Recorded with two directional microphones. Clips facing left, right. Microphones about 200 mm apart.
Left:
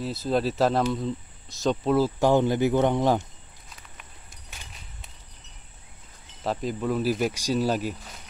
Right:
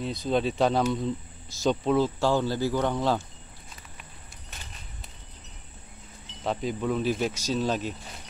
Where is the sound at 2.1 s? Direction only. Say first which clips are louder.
Left 4 dB; 20° left (ahead or behind).